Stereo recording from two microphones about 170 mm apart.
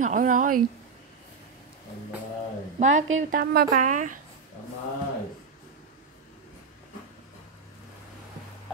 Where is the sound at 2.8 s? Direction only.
45° right (ahead or behind).